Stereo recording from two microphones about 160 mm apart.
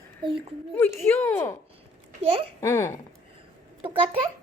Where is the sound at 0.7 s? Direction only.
15° left (ahead or behind).